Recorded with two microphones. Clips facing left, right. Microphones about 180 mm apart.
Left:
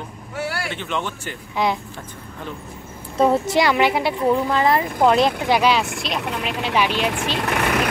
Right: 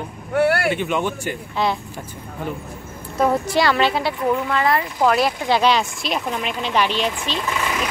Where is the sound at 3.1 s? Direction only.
25° left (ahead or behind).